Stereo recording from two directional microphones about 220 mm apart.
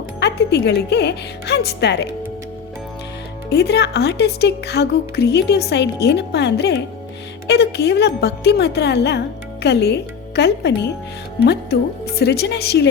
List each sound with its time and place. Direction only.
0.2 s speech: 50° left (ahead or behind)
3.5 s speech: 50° left (ahead or behind)